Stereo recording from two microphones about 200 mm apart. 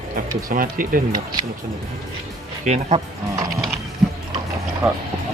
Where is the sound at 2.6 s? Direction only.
35° right (ahead or behind).